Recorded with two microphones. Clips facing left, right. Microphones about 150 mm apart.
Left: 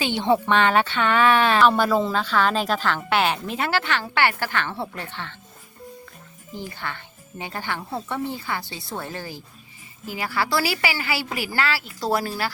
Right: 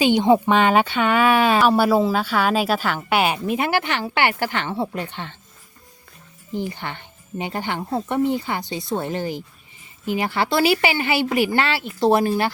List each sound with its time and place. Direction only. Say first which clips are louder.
0.0 s speech: right 6 dB; 15° right (ahead or behind)
6.5 s speech: right 6 dB; 15° right (ahead or behind)